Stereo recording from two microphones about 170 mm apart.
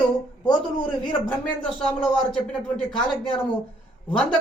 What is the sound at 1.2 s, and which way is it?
A man's voice, 5° left (ahead or behind).